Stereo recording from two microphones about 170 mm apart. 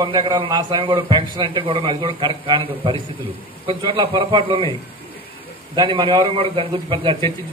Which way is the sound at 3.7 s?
30° right (ahead or behind).